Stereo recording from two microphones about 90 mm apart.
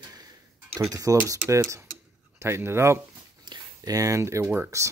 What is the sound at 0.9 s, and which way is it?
Speech, 40° right (ahead or behind).